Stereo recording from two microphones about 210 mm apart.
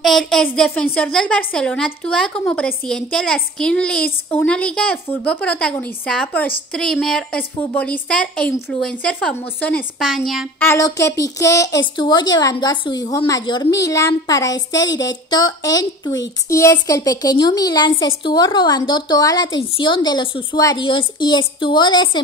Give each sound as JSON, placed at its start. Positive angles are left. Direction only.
{"t": 0.0, "sound": "a woman's voice", "side_deg": 0}
{"t": 10.7, "sound": "a woman's voice", "side_deg": 15}